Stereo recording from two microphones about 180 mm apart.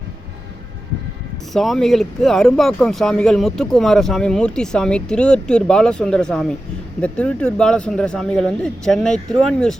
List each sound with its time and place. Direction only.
1.5 s speech: centre (ahead or behind)